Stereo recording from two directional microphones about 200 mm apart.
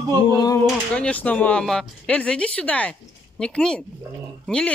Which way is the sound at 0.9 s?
5° left (ahead or behind).